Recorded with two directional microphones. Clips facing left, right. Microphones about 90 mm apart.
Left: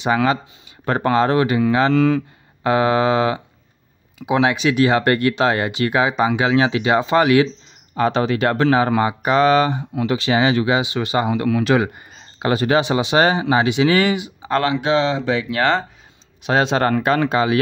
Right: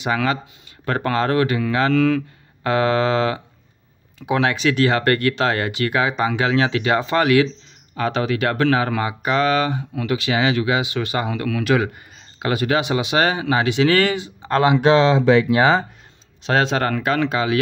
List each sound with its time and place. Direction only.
0.0 s speech: 25° left (ahead or behind)
15.2 s speech: 55° right (ahead or behind)
15.6 s speech: 10° right (ahead or behind)
16.4 s speech: 15° left (ahead or behind)
16.7 s speech: 30° left (ahead or behind)